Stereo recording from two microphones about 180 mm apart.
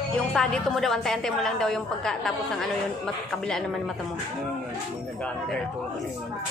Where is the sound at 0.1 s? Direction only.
5° left (ahead or behind).